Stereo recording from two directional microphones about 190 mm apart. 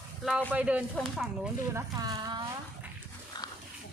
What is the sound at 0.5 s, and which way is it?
Speech, 5° right (ahead or behind).